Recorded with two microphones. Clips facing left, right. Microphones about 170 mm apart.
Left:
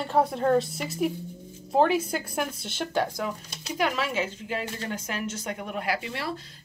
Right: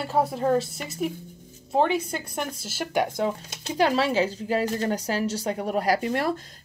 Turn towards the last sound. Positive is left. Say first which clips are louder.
# right 7 dB
turn(degrees=-45)  # may be behind; listen again after turning